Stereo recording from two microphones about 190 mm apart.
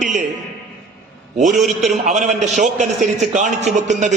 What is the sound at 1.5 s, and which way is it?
Speech, centre (ahead or behind).